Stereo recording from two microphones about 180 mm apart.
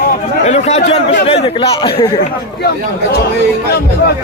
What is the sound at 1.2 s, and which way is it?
Speech, 30° left (ahead or behind).